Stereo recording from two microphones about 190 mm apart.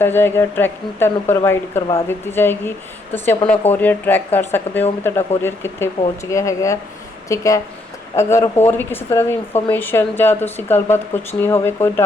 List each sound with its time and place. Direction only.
0.0 s speech: 10° left (ahead or behind)